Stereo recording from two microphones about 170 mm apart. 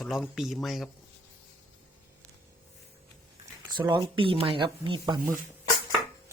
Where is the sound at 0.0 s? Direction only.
Centre (ahead or behind).